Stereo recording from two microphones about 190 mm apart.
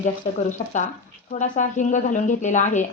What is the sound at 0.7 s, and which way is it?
A woman's voice, 40° left (ahead or behind).